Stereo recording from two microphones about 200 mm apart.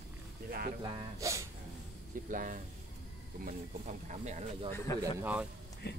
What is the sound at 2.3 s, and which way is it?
Speech, 40° right (ahead or behind).